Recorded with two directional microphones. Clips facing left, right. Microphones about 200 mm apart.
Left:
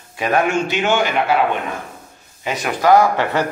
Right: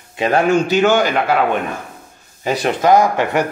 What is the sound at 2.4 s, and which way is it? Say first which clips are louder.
Speech: right 5 dB; 40° right (ahead or behind).